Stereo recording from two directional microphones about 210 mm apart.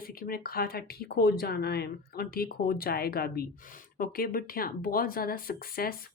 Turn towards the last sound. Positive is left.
turn(degrees=45)  # may be behind; listen again after turning